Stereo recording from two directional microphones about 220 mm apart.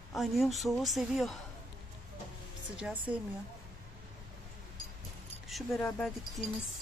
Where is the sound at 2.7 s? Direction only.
5° right (ahead or behind).